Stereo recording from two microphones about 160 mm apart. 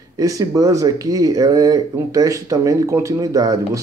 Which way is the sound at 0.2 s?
20° right (ahead or behind).